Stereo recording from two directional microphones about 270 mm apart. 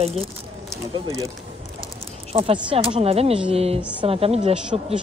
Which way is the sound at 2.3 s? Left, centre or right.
Centre.